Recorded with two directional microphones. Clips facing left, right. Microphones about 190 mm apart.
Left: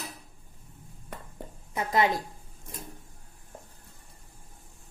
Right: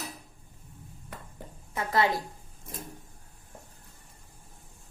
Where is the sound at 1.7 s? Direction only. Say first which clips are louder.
Left 1 dB; 20° left (ahead or behind).